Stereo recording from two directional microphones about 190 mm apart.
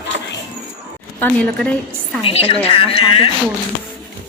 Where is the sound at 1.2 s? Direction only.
5° left (ahead or behind).